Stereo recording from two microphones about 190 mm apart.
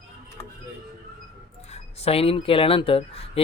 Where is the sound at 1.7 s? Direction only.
35° left (ahead or behind).